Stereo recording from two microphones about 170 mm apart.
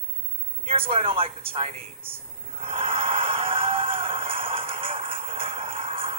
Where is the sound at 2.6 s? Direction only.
30° right (ahead or behind).